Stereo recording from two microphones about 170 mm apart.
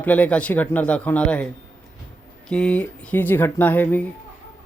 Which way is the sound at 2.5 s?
5° left (ahead or behind).